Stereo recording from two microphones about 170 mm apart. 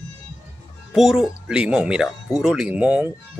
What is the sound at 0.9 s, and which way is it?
Speech, centre (ahead or behind).